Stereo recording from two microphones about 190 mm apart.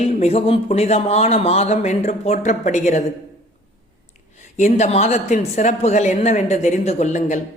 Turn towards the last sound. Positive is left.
turn(degrees=40)  # may be behind; listen again after turning